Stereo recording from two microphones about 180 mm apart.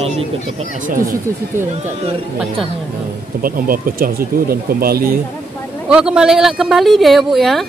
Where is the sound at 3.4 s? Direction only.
50° right (ahead or behind).